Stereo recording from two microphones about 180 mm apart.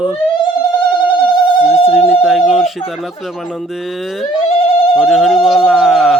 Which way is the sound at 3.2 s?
Centre (ahead or behind).